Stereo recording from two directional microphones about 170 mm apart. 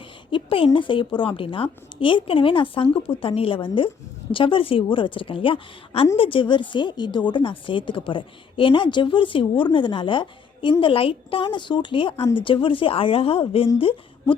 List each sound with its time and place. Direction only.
0.3 s a woman's voice: 30° left (ahead or behind)